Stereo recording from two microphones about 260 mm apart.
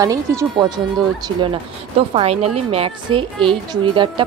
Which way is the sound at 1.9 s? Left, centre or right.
Right.